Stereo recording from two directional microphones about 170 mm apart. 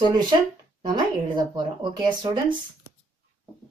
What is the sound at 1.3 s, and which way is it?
Speech, 25° right (ahead or behind).